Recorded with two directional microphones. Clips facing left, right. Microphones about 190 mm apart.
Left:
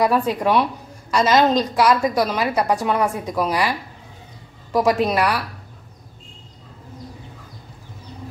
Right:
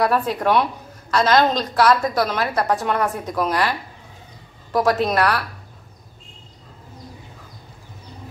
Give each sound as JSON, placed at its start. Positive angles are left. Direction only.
{"t": 0.0, "sound": "a woman's voice", "side_deg": 10}
{"t": 4.7, "sound": "a woman's voice", "side_deg": 10}